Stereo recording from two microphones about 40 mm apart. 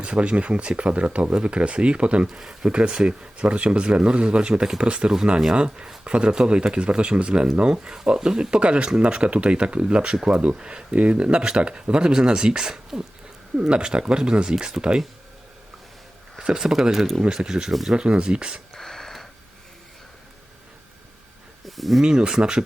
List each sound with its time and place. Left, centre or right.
0.0 s speech: right
2.4 s speech: centre
2.6 s speech: right
14.8 s speech: right
16.4 s speech: centre
18.7 s a sound: centre
21.7 s speech: centre
22.0 s speech: centre